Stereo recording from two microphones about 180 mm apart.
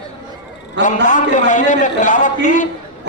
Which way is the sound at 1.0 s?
45° left (ahead or behind).